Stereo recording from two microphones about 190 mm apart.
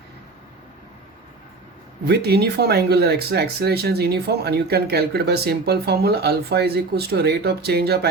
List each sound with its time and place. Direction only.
2.0 s speech: 55° right (ahead or behind)